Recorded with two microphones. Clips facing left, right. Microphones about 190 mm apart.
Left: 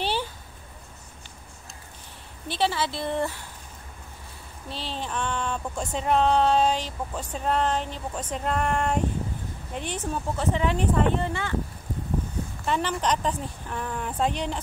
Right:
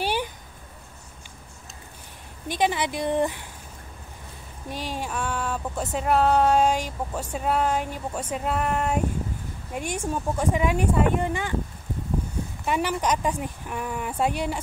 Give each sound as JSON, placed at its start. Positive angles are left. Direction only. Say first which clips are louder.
{"t": 0.0, "sound": "a sound", "louder": "right 2 dB", "side_deg": -15}
{"t": 2.4, "sound": "speech", "louder": "right 2 dB", "side_deg": -15}
{"t": 4.6, "sound": "speech", "louder": "right 2 dB", "side_deg": -15}
{"t": 12.6, "sound": "speech", "louder": "right 1 dB", "side_deg": -10}